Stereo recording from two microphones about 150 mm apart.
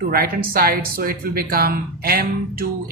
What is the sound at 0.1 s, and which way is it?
Speech, 85° right.